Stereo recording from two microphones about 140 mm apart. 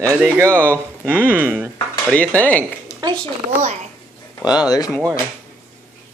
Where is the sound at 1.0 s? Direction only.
15° right (ahead or behind).